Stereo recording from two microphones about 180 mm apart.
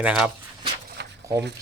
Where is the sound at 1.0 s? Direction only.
65° right (ahead or behind).